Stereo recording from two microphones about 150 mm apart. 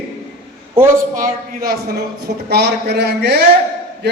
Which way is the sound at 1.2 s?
75° right (ahead or behind).